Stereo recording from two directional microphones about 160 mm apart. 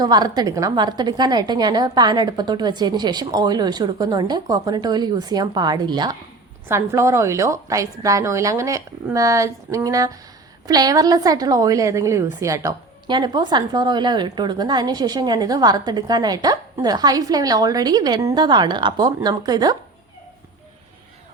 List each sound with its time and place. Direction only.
0.0 s a woman's voice: 25° right (ahead or behind)